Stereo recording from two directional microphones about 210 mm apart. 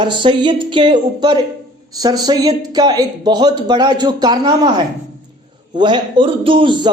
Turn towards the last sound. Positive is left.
turn(degrees=-20)  # may be behind; listen again after turning